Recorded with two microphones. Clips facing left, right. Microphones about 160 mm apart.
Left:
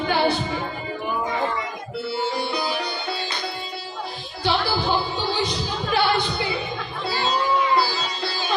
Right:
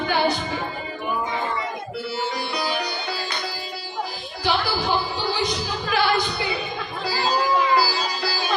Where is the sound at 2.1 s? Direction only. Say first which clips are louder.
Left 3 dB; 30° left (ahead or behind).